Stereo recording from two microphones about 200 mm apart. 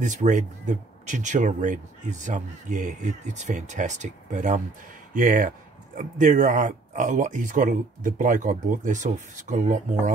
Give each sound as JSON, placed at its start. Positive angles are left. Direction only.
{"t": 0.0, "sound": "speech", "side_deg": -35}